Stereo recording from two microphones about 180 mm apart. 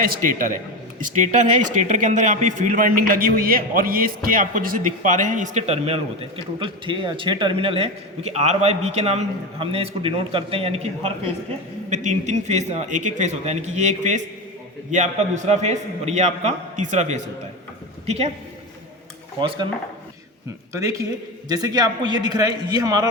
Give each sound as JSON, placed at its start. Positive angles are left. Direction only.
{"t": 0.0, "sound": "a man's voice", "side_deg": -50}
{"t": 19.4, "sound": "a man's voice", "side_deg": -25}
{"t": 20.7, "sound": "a man's voice", "side_deg": -15}